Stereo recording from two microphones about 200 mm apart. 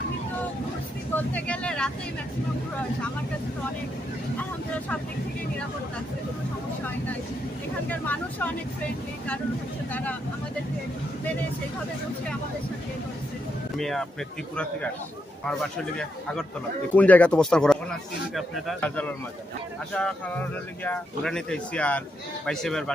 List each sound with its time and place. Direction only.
1.1 s vehicle: 5° left (ahead or behind)
7.9 s speech: 10° left (ahead or behind)
9.9 s speech: 10° left (ahead or behind)
13.7 s speech: centre (ahead or behind)